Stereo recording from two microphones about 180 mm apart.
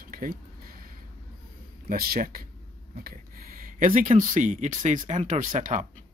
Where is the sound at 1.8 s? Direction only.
55° right (ahead or behind).